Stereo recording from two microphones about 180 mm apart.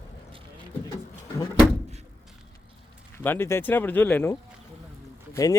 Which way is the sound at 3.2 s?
10° left (ahead or behind).